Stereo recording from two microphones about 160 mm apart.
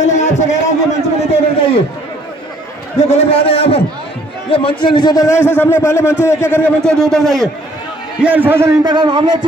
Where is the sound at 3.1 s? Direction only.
35° left (ahead or behind); by 7.5 s centre (ahead or behind).